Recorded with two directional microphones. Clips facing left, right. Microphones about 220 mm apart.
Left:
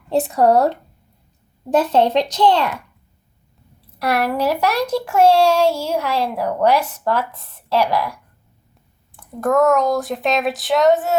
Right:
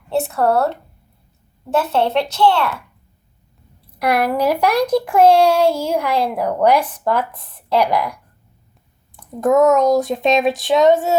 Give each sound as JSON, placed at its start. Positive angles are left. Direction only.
{"t": 0.2, "sound": "a child's voice", "side_deg": 15}
{"t": 1.9, "sound": "a child's voice", "side_deg": 15}
{"t": 3.9, "sound": "a child's voice", "side_deg": -10}
{"t": 9.4, "sound": "speech", "side_deg": -25}